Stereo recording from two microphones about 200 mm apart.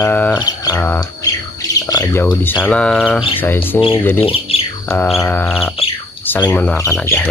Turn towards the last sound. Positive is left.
turn(degrees=10)  # may be behind; listen again after turning